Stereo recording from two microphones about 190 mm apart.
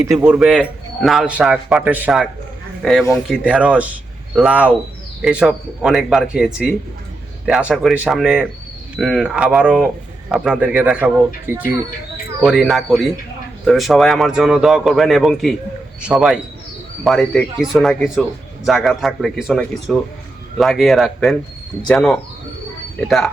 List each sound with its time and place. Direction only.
0.0 s speech: 15° right (ahead or behind)